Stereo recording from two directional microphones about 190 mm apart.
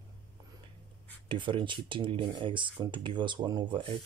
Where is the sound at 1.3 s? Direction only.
25° right (ahead or behind).